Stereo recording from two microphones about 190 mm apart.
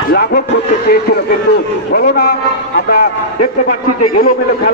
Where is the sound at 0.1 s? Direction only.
60° left (ahead or behind).